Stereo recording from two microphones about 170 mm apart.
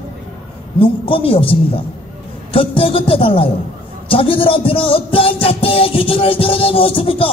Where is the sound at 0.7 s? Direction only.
30° left (ahead or behind).